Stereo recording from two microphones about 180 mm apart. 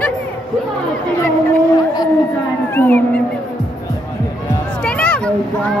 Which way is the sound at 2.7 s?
10° left (ahead or behind).